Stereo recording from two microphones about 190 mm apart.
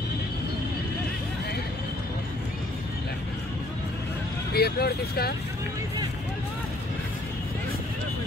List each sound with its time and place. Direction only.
4.6 s speech: 55° left (ahead or behind)